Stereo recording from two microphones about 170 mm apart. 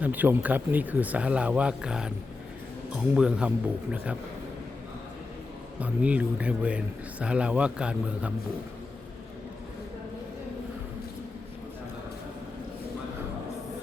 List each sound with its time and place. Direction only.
0.0 s a man's voice: 10° right (ahead or behind)
5.8 s a man's voice: 10° right (ahead or behind)